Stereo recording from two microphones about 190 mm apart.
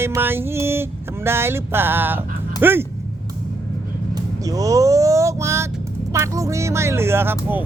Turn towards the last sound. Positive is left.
turn(degrees=-10)  # may be behind; listen again after turning